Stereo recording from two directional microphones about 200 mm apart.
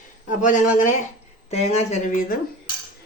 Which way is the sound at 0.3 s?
40° left (ahead or behind).